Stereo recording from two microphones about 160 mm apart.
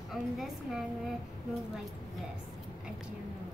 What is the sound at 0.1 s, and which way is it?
Speech, centre (ahead or behind).